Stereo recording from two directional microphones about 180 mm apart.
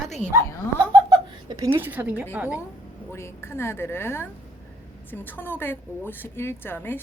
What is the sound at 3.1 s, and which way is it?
A woman's voice, 15° left (ahead or behind).